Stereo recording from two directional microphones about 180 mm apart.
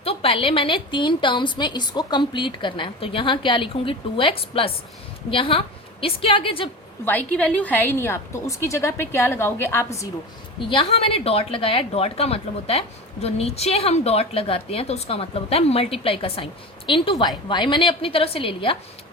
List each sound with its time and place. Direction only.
0.0 s a woman's voice: 30° left (ahead or behind)
7.0 s a woman's voice: 10° left (ahead or behind)
10.6 s a woman's voice: 30° left (ahead or behind)